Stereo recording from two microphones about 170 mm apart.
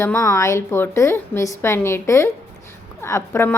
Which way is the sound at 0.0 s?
15° left (ahead or behind).